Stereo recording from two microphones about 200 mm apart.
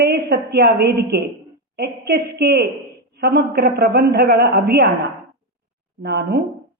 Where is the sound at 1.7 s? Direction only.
55° right (ahead or behind).